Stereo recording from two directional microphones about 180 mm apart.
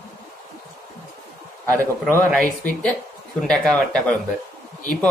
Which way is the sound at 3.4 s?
5° left (ahead or behind).